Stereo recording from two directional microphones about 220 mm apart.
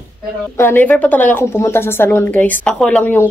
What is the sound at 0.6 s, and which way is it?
Speech, 10° left (ahead or behind).